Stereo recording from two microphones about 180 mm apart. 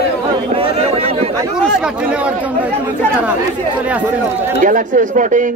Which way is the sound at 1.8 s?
5° right (ahead or behind).